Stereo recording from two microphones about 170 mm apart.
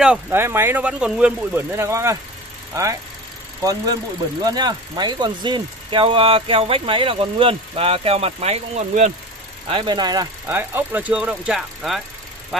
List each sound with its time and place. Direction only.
0.0 s speech: 10° right (ahead or behind); by 9.1 s 45° right (ahead or behind)
9.7 s speech: 30° right (ahead or behind)
10.4 s speech: 10° right (ahead or behind)